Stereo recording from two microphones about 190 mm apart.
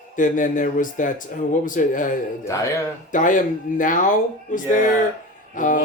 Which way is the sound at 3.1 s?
45° left (ahead or behind).